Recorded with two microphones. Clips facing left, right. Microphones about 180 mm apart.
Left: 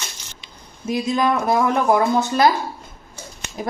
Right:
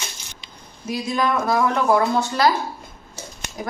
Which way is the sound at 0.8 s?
20° left (ahead or behind).